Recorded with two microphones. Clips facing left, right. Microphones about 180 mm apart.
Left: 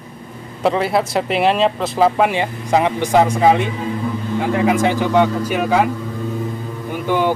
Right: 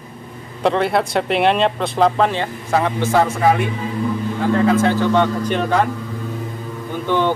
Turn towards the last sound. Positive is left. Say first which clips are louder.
# left 1 dB
turn(degrees=10)  # may be behind; listen again after turning